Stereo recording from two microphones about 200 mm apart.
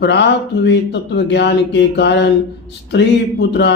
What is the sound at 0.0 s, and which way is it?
Speech, 60° left (ahead or behind).